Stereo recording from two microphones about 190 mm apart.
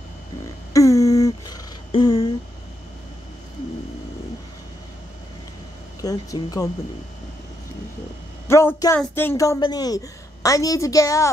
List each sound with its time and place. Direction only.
0.7 s humming: 15° left (ahead or behind)
1.9 s a sound: 25° left (ahead or behind)
5.9 s speech: 20° left (ahead or behind)
8.5 s a woman's voice: 15° left (ahead or behind)